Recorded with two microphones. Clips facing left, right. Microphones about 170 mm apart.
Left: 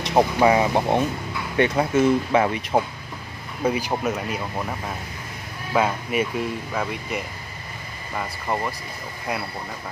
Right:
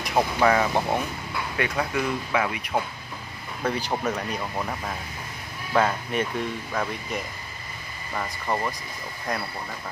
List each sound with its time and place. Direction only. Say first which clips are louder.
0.0 s speech: left 4 dB; 20° left (ahead or behind)
3.6 s speech: left 3 dB; 10° left (ahead or behind)
9.3 s speech: left 1 dB; 10° left (ahead or behind)